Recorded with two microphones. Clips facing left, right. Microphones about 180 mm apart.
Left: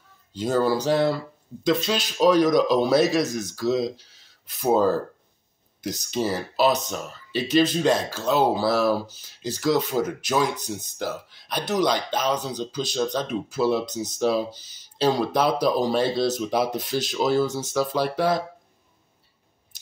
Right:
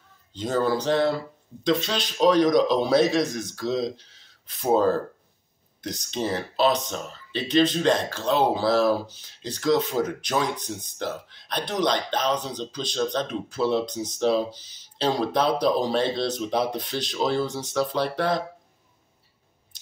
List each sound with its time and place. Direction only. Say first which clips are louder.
0.3 s speech: left 2 dB; 5° left (ahead or behind)